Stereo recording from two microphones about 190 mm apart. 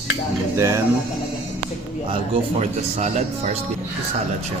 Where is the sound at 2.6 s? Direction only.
35° right (ahead or behind).